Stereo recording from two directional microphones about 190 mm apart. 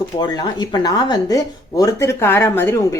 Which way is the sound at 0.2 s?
20° left (ahead or behind).